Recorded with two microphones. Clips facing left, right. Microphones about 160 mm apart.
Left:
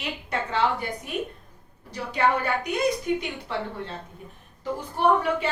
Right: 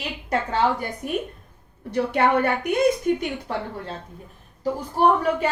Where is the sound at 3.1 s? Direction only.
50° right (ahead or behind).